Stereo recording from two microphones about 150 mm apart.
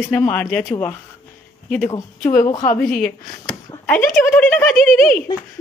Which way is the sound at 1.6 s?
10° left (ahead or behind).